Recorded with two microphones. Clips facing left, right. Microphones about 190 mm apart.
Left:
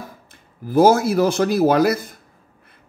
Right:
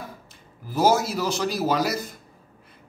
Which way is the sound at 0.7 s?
55° left (ahead or behind).